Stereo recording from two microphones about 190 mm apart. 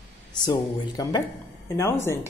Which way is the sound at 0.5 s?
20° left (ahead or behind).